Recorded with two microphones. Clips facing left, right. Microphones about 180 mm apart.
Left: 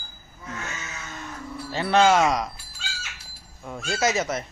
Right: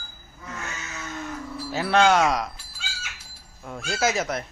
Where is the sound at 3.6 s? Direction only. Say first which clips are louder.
Even; centre (ahead or behind).